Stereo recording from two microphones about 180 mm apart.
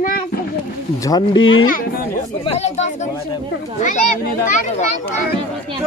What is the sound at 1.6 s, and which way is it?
Speech, 50° left (ahead or behind).